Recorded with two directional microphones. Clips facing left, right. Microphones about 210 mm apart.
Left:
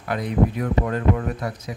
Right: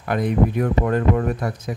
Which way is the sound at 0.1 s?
50° right (ahead or behind).